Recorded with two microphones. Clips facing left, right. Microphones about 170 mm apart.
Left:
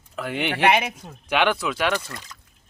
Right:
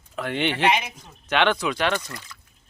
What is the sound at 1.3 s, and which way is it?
Speech, 5° left (ahead or behind).